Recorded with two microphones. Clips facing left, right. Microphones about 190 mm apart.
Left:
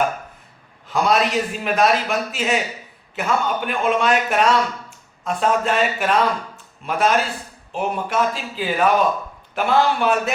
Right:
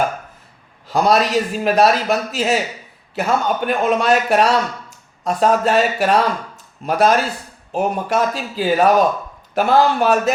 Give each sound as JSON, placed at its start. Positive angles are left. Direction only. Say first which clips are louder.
{"t": 0.9, "sound": "a man's voice", "louder": "right 3 dB", "side_deg": -35}